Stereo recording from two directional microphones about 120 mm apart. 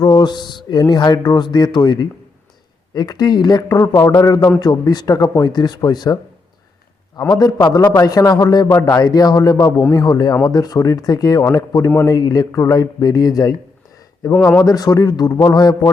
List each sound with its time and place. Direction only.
0.0 s speech: 35° left (ahead or behind)
7.2 s speech: 30° left (ahead or behind)
14.3 s speech: 10° left (ahead or behind)
14.6 s speech: 30° left (ahead or behind)